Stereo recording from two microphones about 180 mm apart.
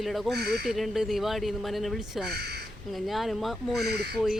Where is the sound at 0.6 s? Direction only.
Centre (ahead or behind).